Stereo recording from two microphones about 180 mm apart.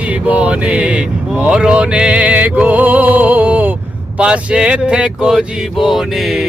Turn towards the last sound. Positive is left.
turn(degrees=0)  # may be behind; listen again after turning